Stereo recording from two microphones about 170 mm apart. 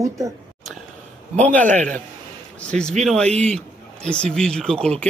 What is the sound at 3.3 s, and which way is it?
Speech, 40° right (ahead or behind).